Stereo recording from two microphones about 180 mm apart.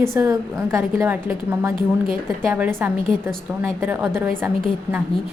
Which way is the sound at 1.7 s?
50° right (ahead or behind).